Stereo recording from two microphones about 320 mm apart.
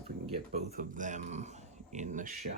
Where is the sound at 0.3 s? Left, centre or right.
Right.